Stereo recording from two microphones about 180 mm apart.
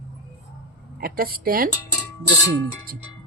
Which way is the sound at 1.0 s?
55° right (ahead or behind).